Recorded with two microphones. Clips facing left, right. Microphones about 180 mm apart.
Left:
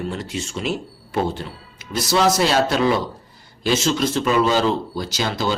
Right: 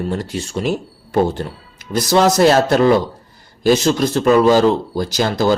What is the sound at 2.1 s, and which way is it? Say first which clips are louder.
Speech: right 6 dB; 45° right (ahead or behind).